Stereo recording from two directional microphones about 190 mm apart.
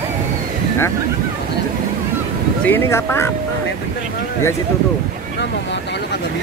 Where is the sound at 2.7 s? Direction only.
15° left (ahead or behind).